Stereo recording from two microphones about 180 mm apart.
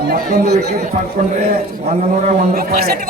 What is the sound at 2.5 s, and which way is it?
Speech, 55° right (ahead or behind).